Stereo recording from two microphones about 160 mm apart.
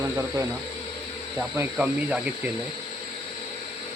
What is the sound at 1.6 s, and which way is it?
Speech, 5° right (ahead or behind).